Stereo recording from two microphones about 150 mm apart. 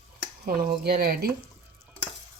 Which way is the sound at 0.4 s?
85° right.